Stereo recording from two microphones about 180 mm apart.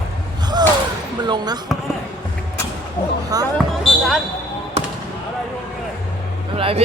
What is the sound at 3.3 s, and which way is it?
Basketball bounce, 20° right (ahead or behind).